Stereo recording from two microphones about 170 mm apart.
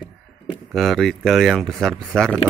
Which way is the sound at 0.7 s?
Centre (ahead or behind).